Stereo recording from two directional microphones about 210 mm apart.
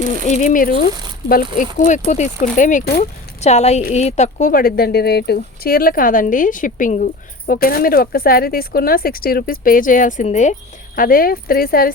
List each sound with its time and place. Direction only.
0.3 s speech: 35° left (ahead or behind)